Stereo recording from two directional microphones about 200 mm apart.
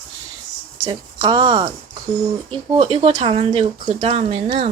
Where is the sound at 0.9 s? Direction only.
25° right (ahead or behind).